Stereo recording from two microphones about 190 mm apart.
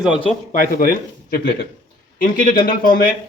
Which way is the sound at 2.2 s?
45° left (ahead or behind).